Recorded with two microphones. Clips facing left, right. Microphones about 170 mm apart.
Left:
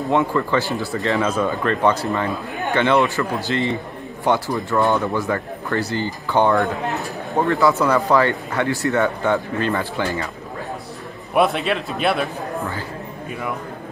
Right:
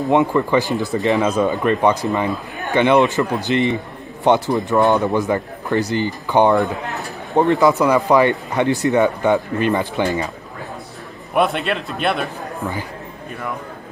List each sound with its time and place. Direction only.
0.1 s speech: 20° right (ahead or behind)
11.3 s a man's voice: centre (ahead or behind)